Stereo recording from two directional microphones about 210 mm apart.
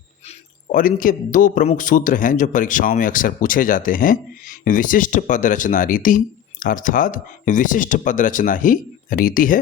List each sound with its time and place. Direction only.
0.3 s speech: 40° left (ahead or behind)